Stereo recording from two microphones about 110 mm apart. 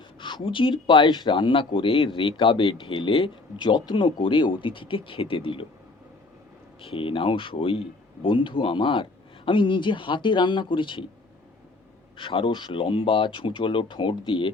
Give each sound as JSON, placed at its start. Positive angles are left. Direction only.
{"t": 0.2, "sound": "speech", "side_deg": 45}
{"t": 6.8, "sound": "speech", "side_deg": 55}
{"t": 12.1, "sound": "speech", "side_deg": 50}